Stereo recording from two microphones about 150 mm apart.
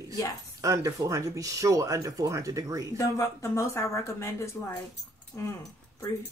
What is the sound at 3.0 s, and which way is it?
Speech, 20° left (ahead or behind).